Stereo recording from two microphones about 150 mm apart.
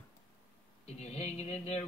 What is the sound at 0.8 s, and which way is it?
Music, 45° left (ahead or behind).